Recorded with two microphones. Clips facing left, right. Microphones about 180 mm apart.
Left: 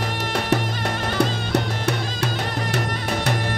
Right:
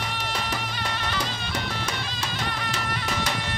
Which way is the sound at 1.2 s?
65° left (ahead or behind).